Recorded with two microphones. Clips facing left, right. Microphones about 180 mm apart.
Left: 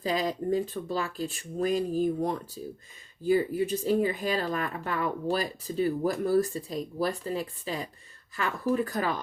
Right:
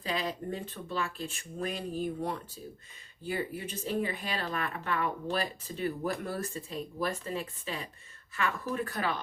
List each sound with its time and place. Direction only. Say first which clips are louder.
0.0 s speech: left 6 dB; 40° left (ahead or behind)